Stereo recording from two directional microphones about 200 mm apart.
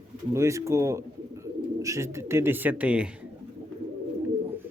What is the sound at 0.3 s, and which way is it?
Speech, 15° right (ahead or behind).